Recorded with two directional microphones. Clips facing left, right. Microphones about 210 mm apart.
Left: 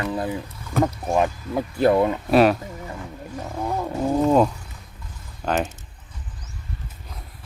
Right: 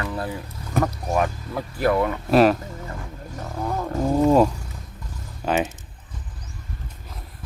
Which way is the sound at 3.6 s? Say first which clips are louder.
Even; 10° left (ahead or behind).